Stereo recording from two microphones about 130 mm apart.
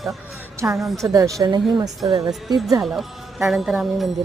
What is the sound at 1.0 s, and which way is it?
A woman's voice, 25° right (ahead or behind).